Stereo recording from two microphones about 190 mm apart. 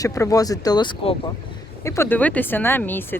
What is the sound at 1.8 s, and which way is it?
Speech, 15° left (ahead or behind).